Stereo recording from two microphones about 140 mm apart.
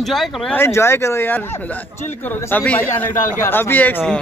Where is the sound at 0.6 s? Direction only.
20° left (ahead or behind).